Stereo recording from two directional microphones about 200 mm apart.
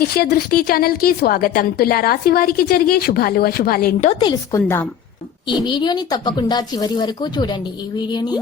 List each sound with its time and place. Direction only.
0.0 s a woman's voice: 50° left (ahead or behind)
4.1 s speech: 25° left (ahead or behind)